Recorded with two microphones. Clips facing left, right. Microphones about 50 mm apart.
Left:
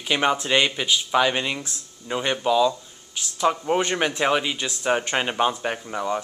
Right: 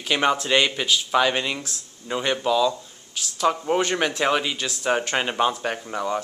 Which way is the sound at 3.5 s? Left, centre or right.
Centre.